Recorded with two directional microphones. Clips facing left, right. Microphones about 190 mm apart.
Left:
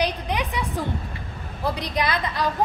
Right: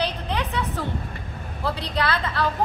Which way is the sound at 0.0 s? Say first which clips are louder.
Left 2 dB; 15° left (ahead or behind).